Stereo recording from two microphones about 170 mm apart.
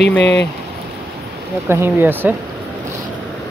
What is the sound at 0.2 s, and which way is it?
Speech, 90° left.